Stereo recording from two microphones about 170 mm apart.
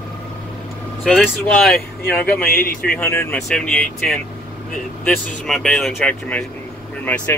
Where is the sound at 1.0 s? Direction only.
Centre (ahead or behind).